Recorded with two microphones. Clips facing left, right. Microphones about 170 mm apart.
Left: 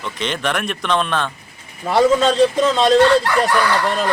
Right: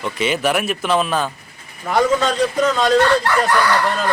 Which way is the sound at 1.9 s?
30° left (ahead or behind).